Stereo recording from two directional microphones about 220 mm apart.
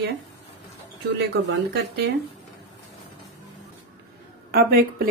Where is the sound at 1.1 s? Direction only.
50° right (ahead or behind).